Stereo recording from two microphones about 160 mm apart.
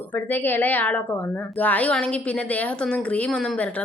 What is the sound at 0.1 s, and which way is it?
Speech, 10° left (ahead or behind).